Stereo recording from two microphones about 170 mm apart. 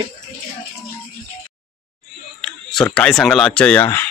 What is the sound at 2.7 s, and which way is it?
Speech, 5° left (ahead or behind).